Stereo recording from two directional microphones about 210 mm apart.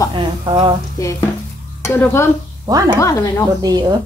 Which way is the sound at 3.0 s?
15° left (ahead or behind).